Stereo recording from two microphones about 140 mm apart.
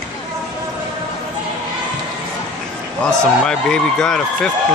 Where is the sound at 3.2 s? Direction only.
5° left (ahead or behind).